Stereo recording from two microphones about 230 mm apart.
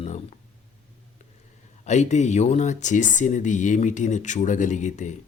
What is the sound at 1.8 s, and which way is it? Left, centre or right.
Speech, left.